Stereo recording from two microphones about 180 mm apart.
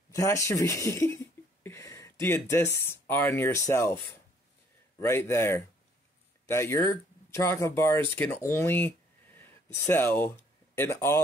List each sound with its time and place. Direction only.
0.1 s speech: 15° left (ahead or behind)